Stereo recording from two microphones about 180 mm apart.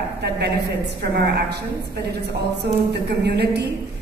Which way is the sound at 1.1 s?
65° right (ahead or behind).